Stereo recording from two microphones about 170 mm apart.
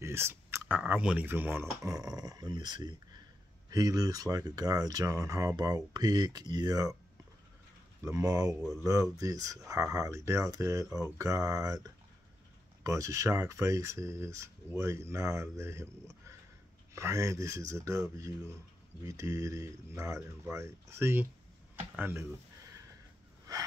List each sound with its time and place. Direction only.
0.0 s speech: 15° right (ahead or behind)
8.0 s speech: 20° right (ahead or behind)
23.5 s a sound: 20° right (ahead or behind)